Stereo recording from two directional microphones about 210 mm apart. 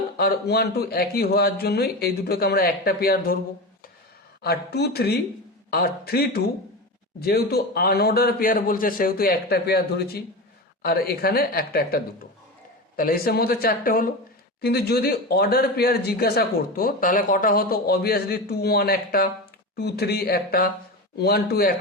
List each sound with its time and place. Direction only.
0.2 s speech: 50° left (ahead or behind)
4.4 s speech: 50° left (ahead or behind)